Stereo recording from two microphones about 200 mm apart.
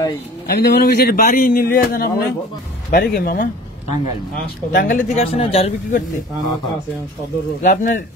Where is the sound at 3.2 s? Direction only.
50° left (ahead or behind).